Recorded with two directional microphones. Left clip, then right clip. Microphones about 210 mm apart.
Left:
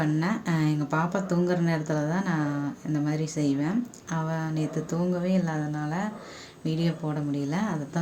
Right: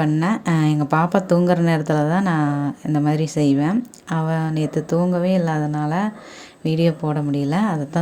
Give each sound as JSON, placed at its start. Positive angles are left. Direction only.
{"t": 0.0, "sound": "speech", "side_deg": -35}